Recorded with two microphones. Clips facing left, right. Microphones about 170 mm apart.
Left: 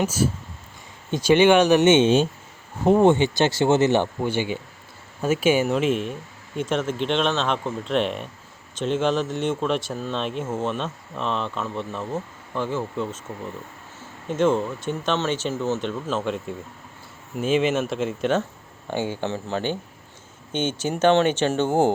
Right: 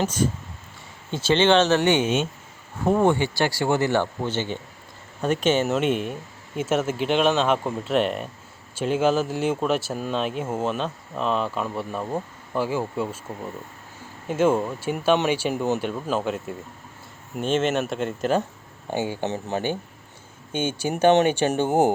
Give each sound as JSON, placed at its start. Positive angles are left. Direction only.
{"t": 0.0, "sound": "speech", "side_deg": 5}
{"t": 14.3, "sound": "speech", "side_deg": -5}
{"t": 18.9, "sound": "speech", "side_deg": -15}